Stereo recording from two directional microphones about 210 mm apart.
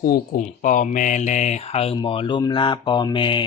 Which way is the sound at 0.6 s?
35° left (ahead or behind).